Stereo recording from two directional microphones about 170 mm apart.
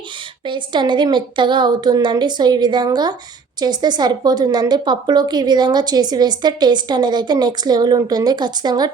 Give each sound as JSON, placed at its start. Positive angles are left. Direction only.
{"t": 0.4, "sound": "a woman's voice", "side_deg": -25}